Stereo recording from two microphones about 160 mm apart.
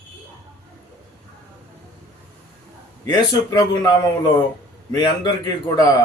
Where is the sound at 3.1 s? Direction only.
20° left (ahead or behind).